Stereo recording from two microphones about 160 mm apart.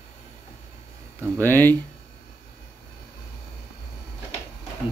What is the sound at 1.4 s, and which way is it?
Speech, 10° left (ahead or behind).